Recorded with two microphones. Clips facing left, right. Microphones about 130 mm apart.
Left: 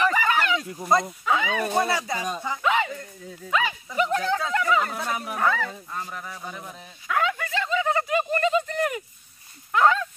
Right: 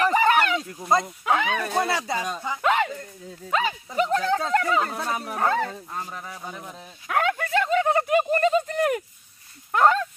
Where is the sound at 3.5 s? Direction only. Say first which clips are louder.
Right 1 dB; 35° right (ahead or behind).